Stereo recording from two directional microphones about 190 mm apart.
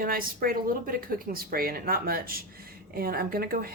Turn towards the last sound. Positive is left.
turn(degrees=-50)  # may be behind; listen again after turning